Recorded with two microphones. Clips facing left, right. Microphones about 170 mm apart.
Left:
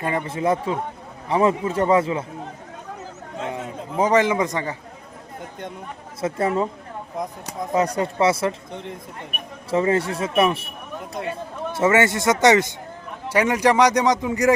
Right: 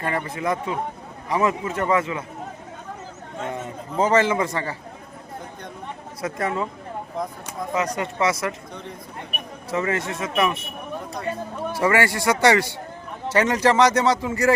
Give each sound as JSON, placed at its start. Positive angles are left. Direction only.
{"t": 0.0, "sound": "a man's voice", "side_deg": 20}
{"t": 3.5, "sound": "a man's voice", "side_deg": 10}
{"t": 6.2, "sound": "a man's voice", "side_deg": 30}
{"t": 11.7, "sound": "a man's voice", "side_deg": 20}